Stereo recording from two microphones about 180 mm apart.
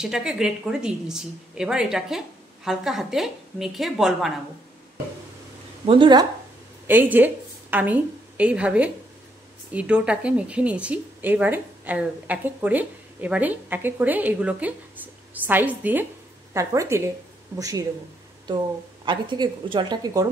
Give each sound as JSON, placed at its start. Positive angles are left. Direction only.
{"t": 0.0, "sound": "a woman's voice", "side_deg": -5}
{"t": 5.9, "sound": "a woman's voice", "side_deg": -25}
{"t": 6.9, "sound": "a woman's voice", "side_deg": -10}
{"t": 19.0, "sound": "a woman's voice", "side_deg": -25}